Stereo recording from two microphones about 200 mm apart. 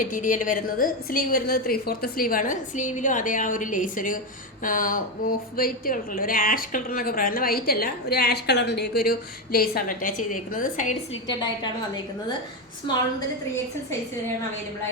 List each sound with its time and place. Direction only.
0.0 s a woman's voice: 40° left (ahead or behind)
11.3 s a woman's voice: 20° left (ahead or behind)